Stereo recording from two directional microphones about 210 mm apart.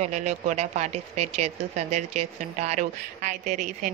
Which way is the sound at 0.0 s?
35° right (ahead or behind).